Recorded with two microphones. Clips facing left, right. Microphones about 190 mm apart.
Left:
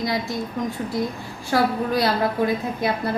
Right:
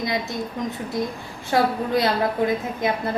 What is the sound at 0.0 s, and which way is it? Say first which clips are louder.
A woman's voice: left 1 dB; 20° right (ahead or behind).